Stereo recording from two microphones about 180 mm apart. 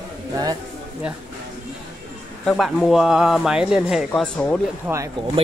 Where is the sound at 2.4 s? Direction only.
5° left (ahead or behind).